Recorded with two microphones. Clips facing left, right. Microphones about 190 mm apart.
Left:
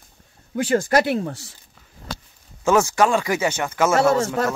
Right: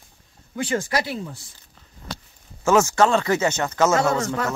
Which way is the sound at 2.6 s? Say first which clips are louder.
Even; 15° left (ahead or behind).